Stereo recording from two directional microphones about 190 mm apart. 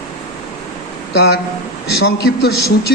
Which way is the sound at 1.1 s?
60° left (ahead or behind).